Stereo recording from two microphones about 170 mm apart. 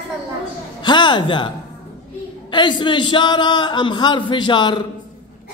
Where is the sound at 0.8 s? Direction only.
25° left (ahead or behind).